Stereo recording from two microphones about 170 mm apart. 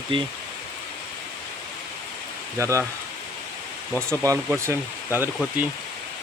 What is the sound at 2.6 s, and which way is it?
Speech, 15° right (ahead or behind).